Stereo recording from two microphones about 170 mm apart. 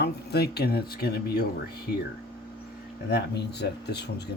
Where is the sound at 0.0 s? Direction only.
75° left (ahead or behind).